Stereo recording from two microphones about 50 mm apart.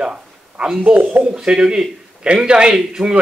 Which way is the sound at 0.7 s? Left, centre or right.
Right.